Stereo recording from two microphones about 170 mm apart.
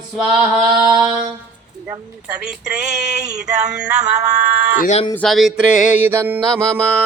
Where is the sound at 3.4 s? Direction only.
5° right (ahead or behind).